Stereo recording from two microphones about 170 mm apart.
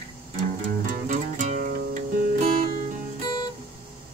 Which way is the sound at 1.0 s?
45° right (ahead or behind).